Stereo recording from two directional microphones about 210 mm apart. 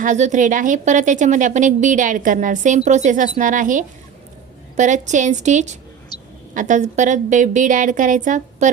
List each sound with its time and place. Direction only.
0.0 s a woman's voice: 35° right (ahead or behind)